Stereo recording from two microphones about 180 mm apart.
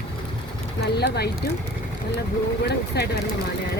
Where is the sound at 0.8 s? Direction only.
65° left (ahead or behind).